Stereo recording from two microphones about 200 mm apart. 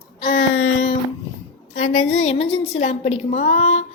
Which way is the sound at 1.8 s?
90° left.